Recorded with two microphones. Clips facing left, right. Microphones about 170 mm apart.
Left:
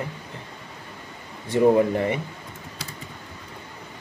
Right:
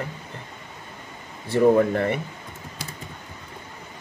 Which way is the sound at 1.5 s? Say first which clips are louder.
Even; 15° left (ahead or behind).